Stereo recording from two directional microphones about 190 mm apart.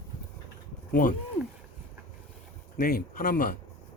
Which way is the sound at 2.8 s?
50° left (ahead or behind).